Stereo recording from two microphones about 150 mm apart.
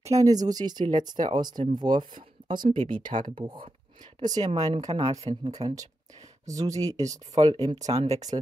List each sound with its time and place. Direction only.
0.0 s speech: 25° right (ahead or behind)
4.5 s speech: 40° right (ahead or behind)
4.8 s speech: 30° right (ahead or behind)
7.8 s speech: 45° right (ahead or behind)